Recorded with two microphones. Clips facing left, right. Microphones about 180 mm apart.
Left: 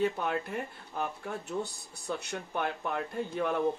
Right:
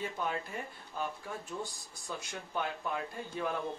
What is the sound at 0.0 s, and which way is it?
Speech, 60° left (ahead or behind).